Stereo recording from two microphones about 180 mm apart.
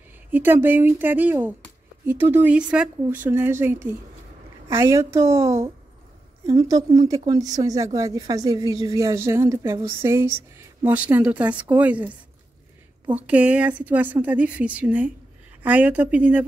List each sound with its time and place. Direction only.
0.3 s speech: 10° right (ahead or behind)
13.1 s speech: 5° right (ahead or behind)